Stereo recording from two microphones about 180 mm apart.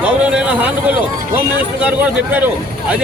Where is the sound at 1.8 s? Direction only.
10° right (ahead or behind).